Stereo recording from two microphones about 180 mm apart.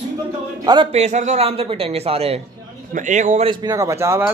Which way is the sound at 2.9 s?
45° right (ahead or behind).